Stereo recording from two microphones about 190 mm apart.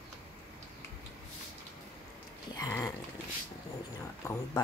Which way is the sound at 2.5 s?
20° left (ahead or behind).